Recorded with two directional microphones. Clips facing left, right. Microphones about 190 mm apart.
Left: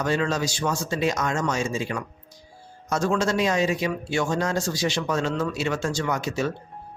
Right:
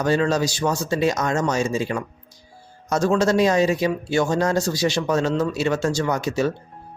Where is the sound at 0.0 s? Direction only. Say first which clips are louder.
Right 4 dB; 35° right (ahead or behind).